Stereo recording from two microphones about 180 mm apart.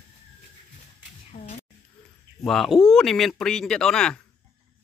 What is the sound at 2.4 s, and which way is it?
Speech, centre (ahead or behind).